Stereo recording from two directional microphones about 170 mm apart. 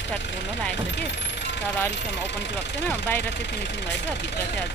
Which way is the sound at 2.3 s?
90° left.